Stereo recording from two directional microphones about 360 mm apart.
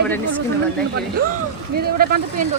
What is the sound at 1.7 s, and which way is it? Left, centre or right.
Speech, right.